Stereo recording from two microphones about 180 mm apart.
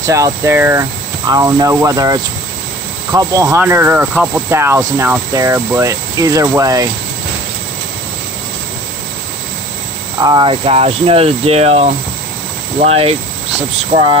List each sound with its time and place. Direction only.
0.0 s speech: 15° right (ahead or behind)
10.1 s speech: 25° right (ahead or behind)